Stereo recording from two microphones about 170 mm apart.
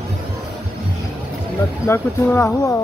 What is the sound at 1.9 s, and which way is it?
Speech, 15° left (ahead or behind).